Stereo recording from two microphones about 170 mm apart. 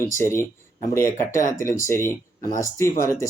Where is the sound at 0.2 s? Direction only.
15° left (ahead or behind).